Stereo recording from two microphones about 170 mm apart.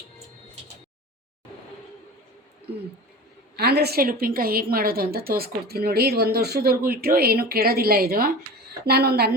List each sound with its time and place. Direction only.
3.5 s a woman's voice: 70° right (ahead or behind)